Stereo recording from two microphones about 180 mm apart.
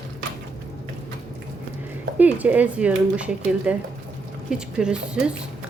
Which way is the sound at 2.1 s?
10° right (ahead or behind).